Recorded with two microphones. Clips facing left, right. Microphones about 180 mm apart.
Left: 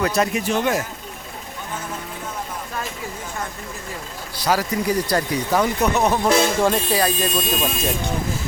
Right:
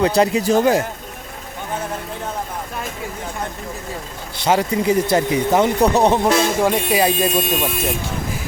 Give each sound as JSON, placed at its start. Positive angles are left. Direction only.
{"t": 0.0, "sound": "speech", "side_deg": -30}
{"t": 4.4, "sound": "speech", "side_deg": -25}
{"t": 6.2, "sound": "speech", "side_deg": -15}